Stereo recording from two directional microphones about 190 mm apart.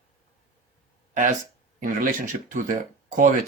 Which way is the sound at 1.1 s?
45° right (ahead or behind).